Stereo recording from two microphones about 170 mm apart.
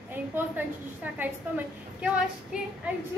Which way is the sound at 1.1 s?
10° right (ahead or behind).